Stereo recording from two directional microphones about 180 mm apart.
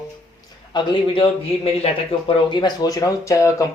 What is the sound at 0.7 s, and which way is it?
Speech, 25° left (ahead or behind).